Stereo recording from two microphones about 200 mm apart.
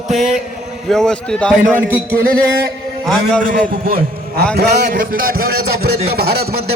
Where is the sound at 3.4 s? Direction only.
45° right (ahead or behind).